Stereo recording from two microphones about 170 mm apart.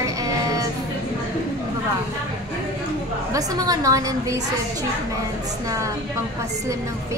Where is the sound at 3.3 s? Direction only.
20° right (ahead or behind).